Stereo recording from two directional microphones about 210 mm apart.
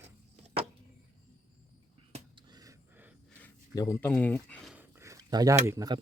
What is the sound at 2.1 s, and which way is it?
Gasp, 20° right (ahead or behind).